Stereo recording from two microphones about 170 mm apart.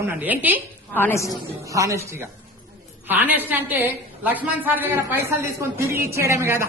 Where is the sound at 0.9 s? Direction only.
10° left (ahead or behind).